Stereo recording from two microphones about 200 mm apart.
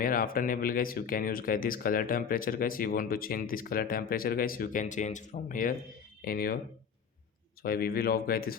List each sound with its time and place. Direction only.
0.0 s speech: 45° left (ahead or behind)
7.6 s speech: 50° left (ahead or behind)